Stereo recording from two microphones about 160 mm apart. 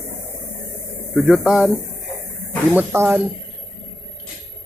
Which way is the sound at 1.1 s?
Centre (ahead or behind).